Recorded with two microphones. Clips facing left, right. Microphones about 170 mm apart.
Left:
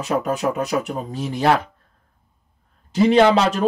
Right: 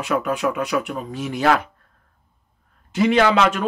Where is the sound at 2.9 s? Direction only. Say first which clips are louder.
Left 3 dB; 30° left (ahead or behind).